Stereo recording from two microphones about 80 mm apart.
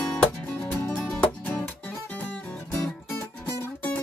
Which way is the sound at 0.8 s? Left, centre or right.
Centre.